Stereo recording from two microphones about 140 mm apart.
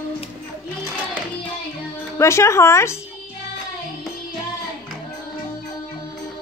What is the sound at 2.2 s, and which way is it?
Speech, 20° left (ahead or behind).